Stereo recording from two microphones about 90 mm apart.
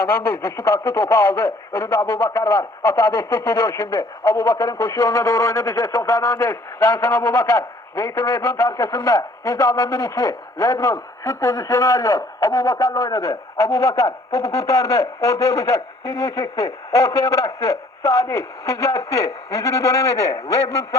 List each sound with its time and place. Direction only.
0.0 s a man's voice: 25° left (ahead or behind)